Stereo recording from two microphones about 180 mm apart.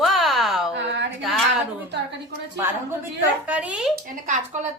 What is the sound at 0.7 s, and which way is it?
Speech, 80° right.